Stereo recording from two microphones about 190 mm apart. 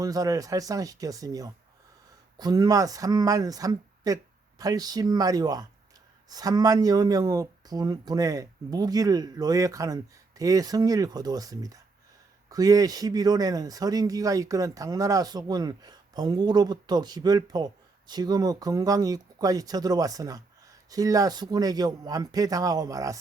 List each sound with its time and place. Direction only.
0.0 s speech: 20° right (ahead or behind)